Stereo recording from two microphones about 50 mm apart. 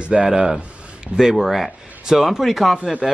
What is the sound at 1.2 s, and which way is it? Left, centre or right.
Speech, centre.